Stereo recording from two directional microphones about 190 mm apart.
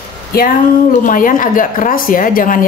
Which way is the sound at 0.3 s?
50° left (ahead or behind).